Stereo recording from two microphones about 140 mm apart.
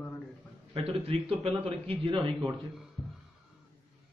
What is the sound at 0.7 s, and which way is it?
A man's voice, 45° right (ahead or behind).